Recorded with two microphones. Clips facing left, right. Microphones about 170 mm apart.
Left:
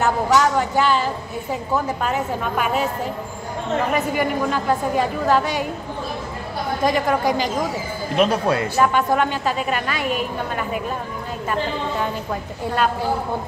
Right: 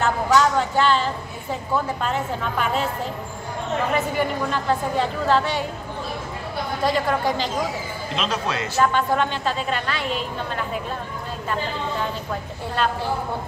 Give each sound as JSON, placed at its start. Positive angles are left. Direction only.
{"t": 0.0, "sound": "a woman's voice", "side_deg": 10}
{"t": 3.9, "sound": "a woman's voice", "side_deg": 10}
{"t": 6.8, "sound": "a woman's voice", "side_deg": 15}
{"t": 8.2, "sound": "speech", "side_deg": 55}
{"t": 8.7, "sound": "a woman's voice", "side_deg": 10}